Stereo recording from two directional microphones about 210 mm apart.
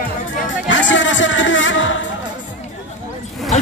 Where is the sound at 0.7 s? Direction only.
60° left (ahead or behind).